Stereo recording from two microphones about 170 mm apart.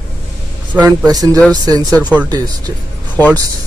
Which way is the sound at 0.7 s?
10° right (ahead or behind).